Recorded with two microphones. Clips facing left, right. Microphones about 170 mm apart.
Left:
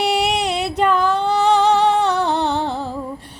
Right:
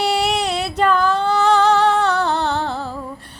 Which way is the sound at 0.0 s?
20° left (ahead or behind).